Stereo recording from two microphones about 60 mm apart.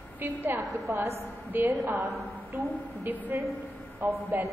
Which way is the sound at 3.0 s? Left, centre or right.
Right.